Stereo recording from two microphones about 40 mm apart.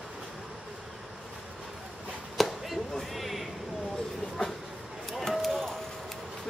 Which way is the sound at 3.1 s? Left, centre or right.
Centre.